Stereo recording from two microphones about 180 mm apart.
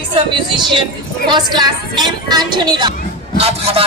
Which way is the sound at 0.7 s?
25° right (ahead or behind).